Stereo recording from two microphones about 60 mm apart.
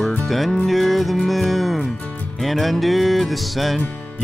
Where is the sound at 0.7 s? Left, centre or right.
Centre.